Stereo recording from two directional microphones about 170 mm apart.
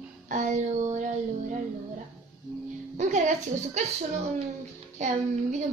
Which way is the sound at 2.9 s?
45° right (ahead or behind).